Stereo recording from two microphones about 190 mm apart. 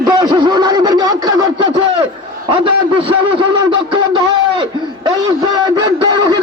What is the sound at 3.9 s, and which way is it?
A man's voice, 25° right (ahead or behind).